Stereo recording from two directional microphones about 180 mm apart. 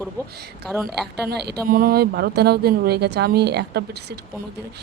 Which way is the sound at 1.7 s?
55° right (ahead or behind).